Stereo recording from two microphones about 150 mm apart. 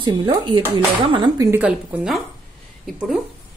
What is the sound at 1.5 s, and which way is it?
A woman's voice, 10° right (ahead or behind).